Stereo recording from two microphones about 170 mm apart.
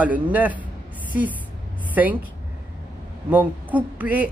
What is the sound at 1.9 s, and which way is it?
Speech, 10° right (ahead or behind).